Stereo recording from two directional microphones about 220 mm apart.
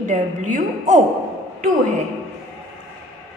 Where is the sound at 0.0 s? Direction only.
35° right (ahead or behind).